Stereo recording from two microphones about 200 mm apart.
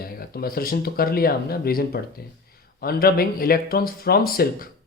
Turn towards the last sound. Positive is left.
turn(degrees=50)  # may be behind; listen again after turning